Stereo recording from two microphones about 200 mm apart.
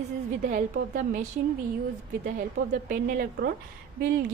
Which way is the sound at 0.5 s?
45° right (ahead or behind).